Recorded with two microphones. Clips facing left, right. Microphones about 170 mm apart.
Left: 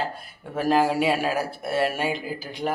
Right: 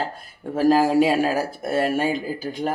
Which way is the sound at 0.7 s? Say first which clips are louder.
Right 4 dB; 35° right (ahead or behind).